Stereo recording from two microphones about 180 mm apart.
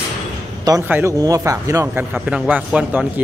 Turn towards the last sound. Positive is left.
turn(degrees=-10)  # may be behind; listen again after turning